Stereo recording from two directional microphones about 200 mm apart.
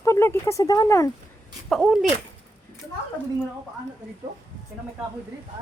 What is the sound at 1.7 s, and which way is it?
Speech, centre (ahead or behind).